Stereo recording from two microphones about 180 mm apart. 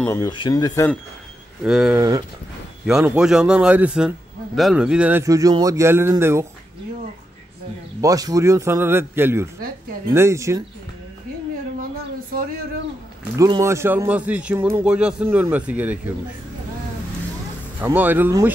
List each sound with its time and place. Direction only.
0.0 s speech: 15° left (ahead or behind)
0.3 s speech: 25° left (ahead or behind)
1.6 s a man's voice: 5° right (ahead or behind)
2.0 s speech: 20° right (ahead or behind)
2.9 s a man's voice: 5° right (ahead or behind)
8.0 s speech: 20° right (ahead or behind)
13.4 s speech: 15° right (ahead or behind)
17.7 s speech: 10° right (ahead or behind)